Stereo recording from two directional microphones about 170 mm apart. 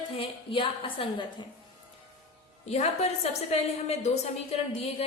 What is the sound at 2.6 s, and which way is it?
A woman's voice, 40° left (ahead or behind).